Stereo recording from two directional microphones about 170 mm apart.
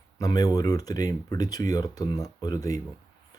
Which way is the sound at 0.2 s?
20° left (ahead or behind).